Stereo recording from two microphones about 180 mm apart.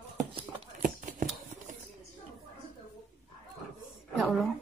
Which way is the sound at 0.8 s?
45° right (ahead or behind).